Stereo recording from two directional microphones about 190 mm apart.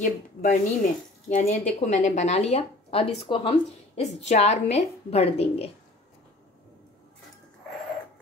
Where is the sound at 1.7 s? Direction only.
40° left (ahead or behind).